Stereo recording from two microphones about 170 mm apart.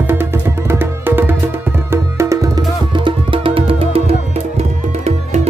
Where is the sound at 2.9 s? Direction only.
30° right (ahead or behind).